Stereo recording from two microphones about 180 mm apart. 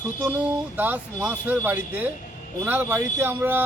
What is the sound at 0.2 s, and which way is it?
Speech, 10° right (ahead or behind).